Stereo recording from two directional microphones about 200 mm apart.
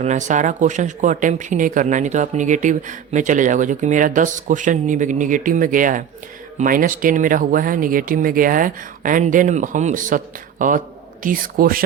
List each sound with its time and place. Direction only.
0.0 s a man's voice: 40° right (ahead or behind)